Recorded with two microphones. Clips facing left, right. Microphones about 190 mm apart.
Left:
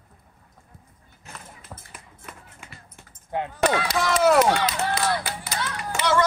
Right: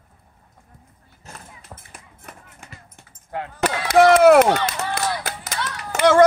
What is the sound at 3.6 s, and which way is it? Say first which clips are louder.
Chop: right 9 dB; 65° right (ahead or behind).